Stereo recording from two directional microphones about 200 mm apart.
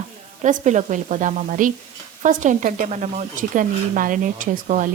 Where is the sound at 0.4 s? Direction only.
35° right (ahead or behind).